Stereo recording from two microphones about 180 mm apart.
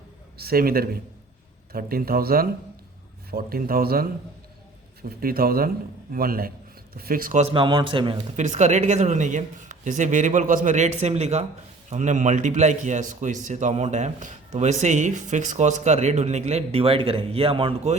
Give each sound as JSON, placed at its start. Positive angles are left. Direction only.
{"t": 0.3, "sound": "a man's voice", "side_deg": -55}
{"t": 5.0, "sound": "a man's voice", "side_deg": -55}
{"t": 7.5, "sound": "a man's voice", "side_deg": -30}
{"t": 8.4, "sound": "a man's voice", "side_deg": -40}